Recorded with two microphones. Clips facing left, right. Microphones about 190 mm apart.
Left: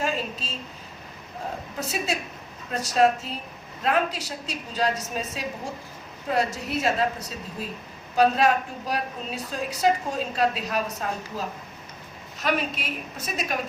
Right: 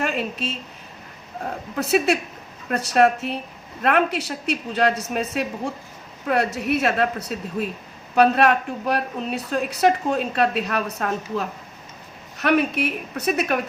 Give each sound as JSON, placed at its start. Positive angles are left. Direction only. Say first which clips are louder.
{"t": 0.0, "sound": "a woman's voice", "louder": "right 4 dB", "side_deg": -65}
{"t": 1.7, "sound": "a woman's voice", "louder": "right 11 dB", "side_deg": -65}